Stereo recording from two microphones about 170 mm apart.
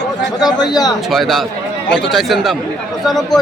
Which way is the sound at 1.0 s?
Centre (ahead or behind).